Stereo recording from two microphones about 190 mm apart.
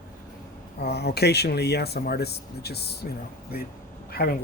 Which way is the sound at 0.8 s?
60° left (ahead or behind).